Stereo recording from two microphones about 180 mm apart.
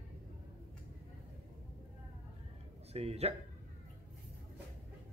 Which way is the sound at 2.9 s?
35° right (ahead or behind).